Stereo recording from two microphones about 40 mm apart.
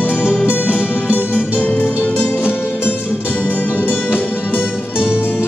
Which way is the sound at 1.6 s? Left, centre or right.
Left.